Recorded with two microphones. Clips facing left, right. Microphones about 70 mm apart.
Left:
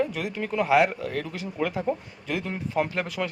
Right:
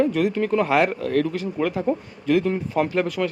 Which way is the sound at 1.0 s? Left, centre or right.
Centre.